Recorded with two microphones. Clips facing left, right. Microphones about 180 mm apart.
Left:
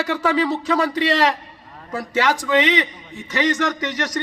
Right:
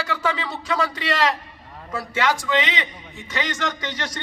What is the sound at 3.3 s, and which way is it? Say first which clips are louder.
Speech: left 6 dB; 25° right (ahead or behind).